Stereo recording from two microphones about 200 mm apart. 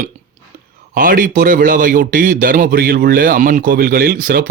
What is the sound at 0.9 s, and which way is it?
Speech, 45° right (ahead or behind).